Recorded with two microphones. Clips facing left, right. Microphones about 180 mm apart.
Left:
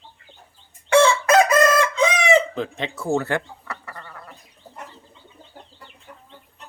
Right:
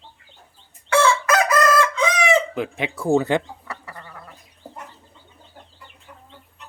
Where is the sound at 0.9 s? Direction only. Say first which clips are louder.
Left 3 dB; 25° left (ahead or behind).